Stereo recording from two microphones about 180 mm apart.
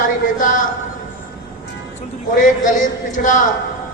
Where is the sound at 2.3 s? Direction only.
45° left (ahead or behind).